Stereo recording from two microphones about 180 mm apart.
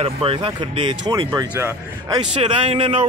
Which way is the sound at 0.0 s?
30° right (ahead or behind).